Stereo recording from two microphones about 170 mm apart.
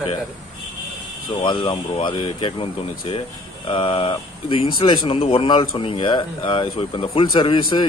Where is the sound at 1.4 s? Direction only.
25° left (ahead or behind).